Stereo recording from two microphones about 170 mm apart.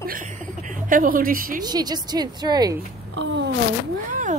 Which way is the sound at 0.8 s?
55° right (ahead or behind).